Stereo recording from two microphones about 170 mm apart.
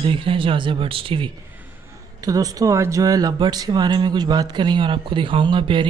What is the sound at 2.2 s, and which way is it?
Speech, 20° right (ahead or behind).